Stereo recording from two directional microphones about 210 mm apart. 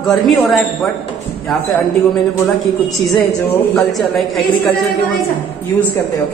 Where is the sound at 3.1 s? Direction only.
Centre (ahead or behind).